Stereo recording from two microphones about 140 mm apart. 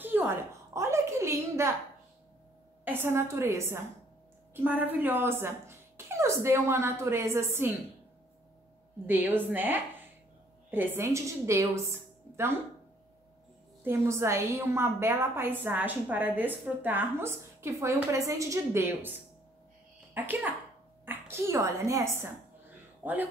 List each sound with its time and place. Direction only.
0.0 s a sound: 15° right (ahead or behind)
2.8 s a woman's voice: 15° right (ahead or behind)
9.0 s a woman's voice: 15° right (ahead or behind)
13.8 s a woman's voice: 20° right (ahead or behind)
20.2 s a woman's voice: 15° right (ahead or behind)